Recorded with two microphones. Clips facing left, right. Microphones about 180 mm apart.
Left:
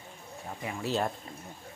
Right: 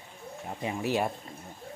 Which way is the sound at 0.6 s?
15° right (ahead or behind).